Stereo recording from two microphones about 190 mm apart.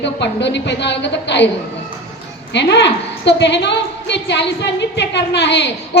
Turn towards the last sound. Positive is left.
turn(degrees=65)  # may be behind; listen again after turning